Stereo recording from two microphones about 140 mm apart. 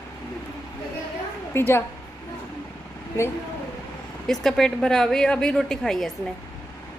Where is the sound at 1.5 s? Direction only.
15° left (ahead or behind).